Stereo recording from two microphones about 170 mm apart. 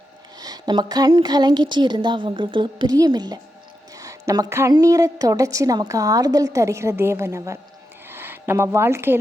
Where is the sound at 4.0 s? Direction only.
20° right (ahead or behind).